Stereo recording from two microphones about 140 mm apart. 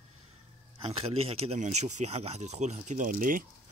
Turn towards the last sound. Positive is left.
turn(degrees=-75)  # may be behind; listen again after turning